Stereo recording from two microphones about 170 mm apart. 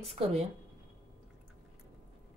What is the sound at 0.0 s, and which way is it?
Speech, 35° right (ahead or behind).